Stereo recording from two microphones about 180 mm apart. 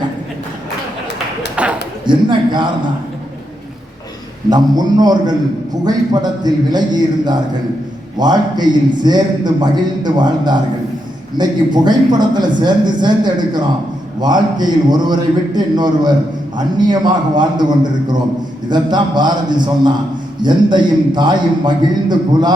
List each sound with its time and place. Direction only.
1.6 s a sound: 5° right (ahead or behind)
2.0 s a man's voice: 25° right (ahead or behind)
4.4 s a man's voice: 20° right (ahead or behind)